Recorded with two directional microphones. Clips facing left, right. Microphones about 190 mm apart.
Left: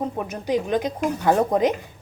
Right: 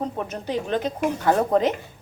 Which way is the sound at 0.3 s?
15° left (ahead or behind).